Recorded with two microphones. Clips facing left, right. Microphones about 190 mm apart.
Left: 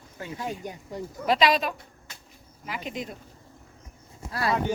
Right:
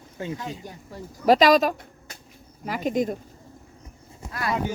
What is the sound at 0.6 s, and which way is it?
Speech, 20° left (ahead or behind).